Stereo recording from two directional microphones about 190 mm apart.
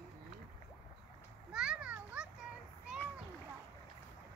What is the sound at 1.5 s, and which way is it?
Children playing, 5° right (ahead or behind).